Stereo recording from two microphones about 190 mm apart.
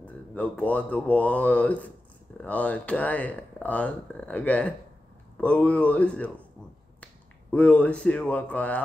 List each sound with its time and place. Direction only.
0.0 s speech: 5° left (ahead or behind)
7.5 s speech: 5° left (ahead or behind)